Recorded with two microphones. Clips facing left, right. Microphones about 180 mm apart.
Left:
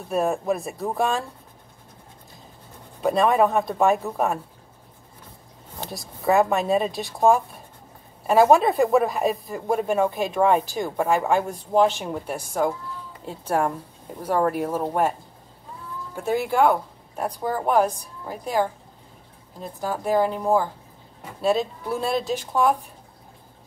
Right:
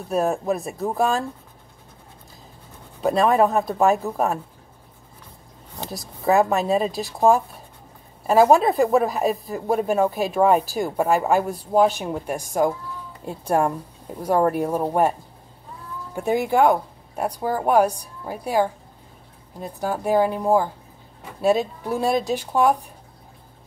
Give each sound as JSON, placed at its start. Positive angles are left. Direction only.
{"t": 0.1, "sound": "speech", "side_deg": 0}
{"t": 3.1, "sound": "speech", "side_deg": 0}
{"t": 5.8, "sound": "a woman's voice", "side_deg": 0}
{"t": 16.2, "sound": "a woman's voice", "side_deg": -15}